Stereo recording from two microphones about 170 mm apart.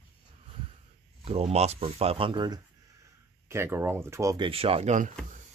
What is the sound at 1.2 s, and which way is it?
Speech, 35° right (ahead or behind).